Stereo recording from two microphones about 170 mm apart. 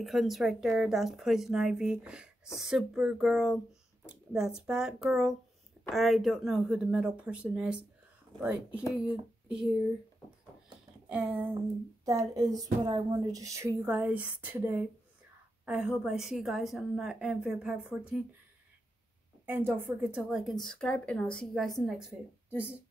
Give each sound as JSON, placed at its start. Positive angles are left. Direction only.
{"t": 0.0, "sound": "speech", "side_deg": 0}
{"t": 9.5, "sound": "speech", "side_deg": -5}
{"t": 11.1, "sound": "a child's voice", "side_deg": -10}
{"t": 19.4, "sound": "speech", "side_deg": -10}